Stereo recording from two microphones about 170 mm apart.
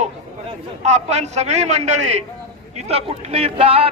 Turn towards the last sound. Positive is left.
turn(degrees=-35)  # may be behind; listen again after turning